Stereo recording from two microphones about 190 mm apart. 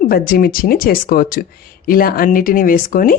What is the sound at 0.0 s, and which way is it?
Speech, 50° left (ahead or behind).